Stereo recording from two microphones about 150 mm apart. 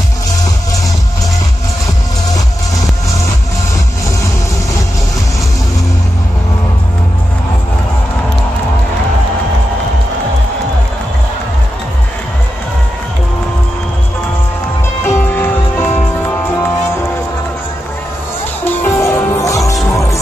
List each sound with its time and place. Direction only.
15.0 s music: 15° left (ahead or behind)
18.6 s music: 20° left (ahead or behind)